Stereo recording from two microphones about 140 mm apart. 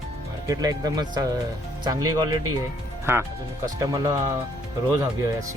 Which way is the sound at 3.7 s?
20° right (ahead or behind).